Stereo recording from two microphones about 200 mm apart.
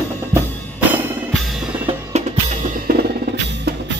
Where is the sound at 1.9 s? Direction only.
35° right (ahead or behind).